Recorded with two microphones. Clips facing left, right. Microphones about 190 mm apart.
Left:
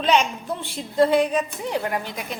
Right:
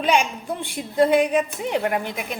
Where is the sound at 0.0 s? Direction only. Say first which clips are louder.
Even; 10° right (ahead or behind).